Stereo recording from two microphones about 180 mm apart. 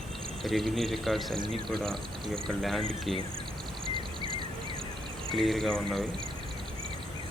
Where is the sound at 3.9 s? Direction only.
30° right (ahead or behind).